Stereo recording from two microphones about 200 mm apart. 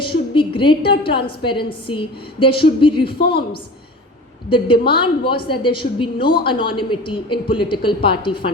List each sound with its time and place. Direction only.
0.0 s a woman's voice: 25° left (ahead or behind)
4.4 s a woman's voice: 25° left (ahead or behind)